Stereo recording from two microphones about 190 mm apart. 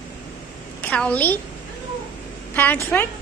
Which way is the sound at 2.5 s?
10° left (ahead or behind).